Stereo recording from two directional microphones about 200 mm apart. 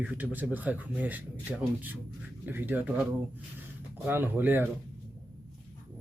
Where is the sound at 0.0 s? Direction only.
5° right (ahead or behind).